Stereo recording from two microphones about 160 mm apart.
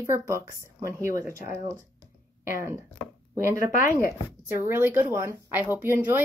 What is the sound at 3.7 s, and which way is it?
Speech, 60° left (ahead or behind).